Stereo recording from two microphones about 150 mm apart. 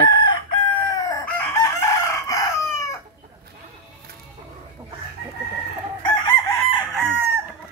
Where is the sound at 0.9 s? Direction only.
25° left (ahead or behind).